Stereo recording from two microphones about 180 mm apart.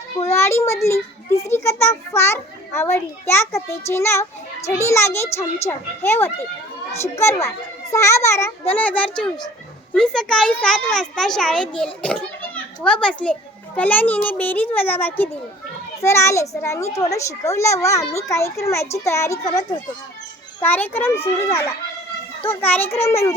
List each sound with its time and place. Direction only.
0.3 s a child's voice: 15° left (ahead or behind)
20.6 s a child's voice: 10° left (ahead or behind)